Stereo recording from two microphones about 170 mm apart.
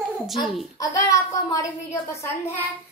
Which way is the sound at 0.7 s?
20° left (ahead or behind).